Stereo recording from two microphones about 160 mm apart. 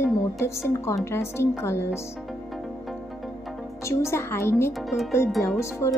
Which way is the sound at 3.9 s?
15° left (ahead or behind).